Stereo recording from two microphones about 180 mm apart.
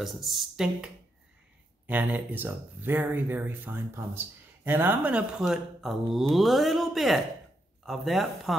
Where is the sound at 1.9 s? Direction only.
10° right (ahead or behind).